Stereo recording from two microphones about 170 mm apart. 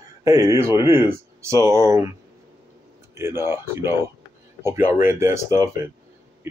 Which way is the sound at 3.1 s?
15° right (ahead or behind).